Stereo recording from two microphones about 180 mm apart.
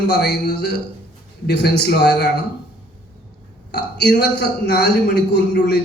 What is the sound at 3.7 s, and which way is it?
A man's voice, 70° left (ahead or behind).